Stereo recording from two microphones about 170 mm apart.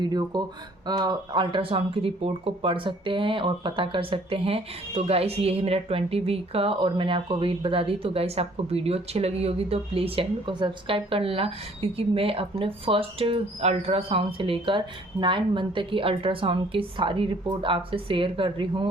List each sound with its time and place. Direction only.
0.0 s speech: 25° right (ahead or behind)